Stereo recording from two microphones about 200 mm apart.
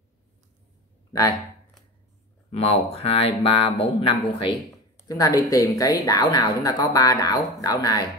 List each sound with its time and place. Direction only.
1.1 s speech: 20° left (ahead or behind)
2.5 s speech: 30° left (ahead or behind)